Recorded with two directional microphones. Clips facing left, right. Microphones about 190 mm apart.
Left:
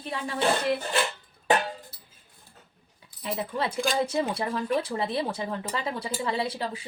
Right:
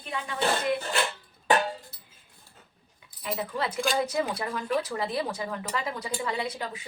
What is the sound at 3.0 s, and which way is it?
Speech, 30° left (ahead or behind).